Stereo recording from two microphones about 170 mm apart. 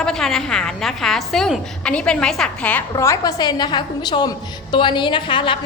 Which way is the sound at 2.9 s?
20° left (ahead or behind).